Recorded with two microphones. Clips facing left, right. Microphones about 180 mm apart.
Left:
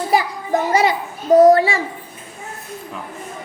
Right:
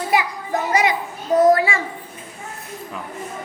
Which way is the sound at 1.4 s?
30° left (ahead or behind).